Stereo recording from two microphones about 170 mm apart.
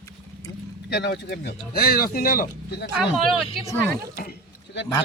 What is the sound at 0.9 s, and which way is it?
Speech, 80° left.